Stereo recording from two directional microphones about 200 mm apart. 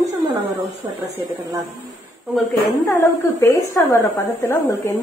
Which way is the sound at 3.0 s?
15° left (ahead or behind).